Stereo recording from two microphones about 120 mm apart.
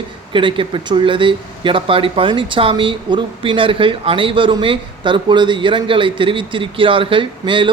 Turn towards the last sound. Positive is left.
turn(degrees=-45)  # may be behind; listen again after turning